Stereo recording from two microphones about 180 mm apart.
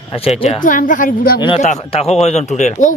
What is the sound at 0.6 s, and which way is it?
Speech, 50° left (ahead or behind).